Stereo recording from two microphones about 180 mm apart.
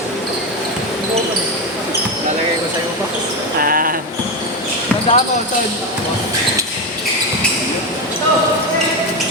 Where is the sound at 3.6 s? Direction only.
55° right (ahead or behind).